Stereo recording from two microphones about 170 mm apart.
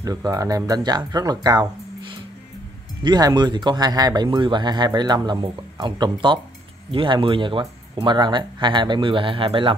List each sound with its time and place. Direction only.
0.0 s speech: 20° right (ahead or behind)